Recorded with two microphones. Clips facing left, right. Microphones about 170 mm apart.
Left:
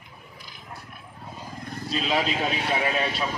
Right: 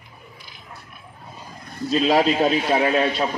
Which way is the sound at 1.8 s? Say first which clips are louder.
Right 8 dB; 40° right (ahead or behind).